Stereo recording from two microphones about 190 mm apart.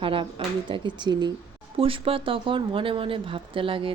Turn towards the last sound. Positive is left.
turn(degrees=-30)  # may be behind; listen again after turning